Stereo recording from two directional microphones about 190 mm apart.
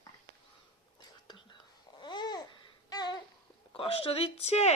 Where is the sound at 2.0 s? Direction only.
25° left (ahead or behind).